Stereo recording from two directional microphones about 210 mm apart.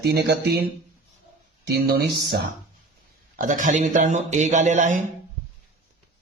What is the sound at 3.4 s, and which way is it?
A man's voice, 40° right (ahead or behind).